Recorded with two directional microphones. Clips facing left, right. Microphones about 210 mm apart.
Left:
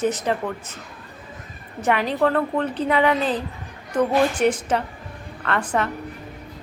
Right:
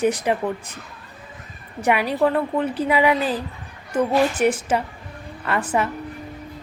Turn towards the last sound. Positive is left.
turn(degrees=-5)  # may be behind; listen again after turning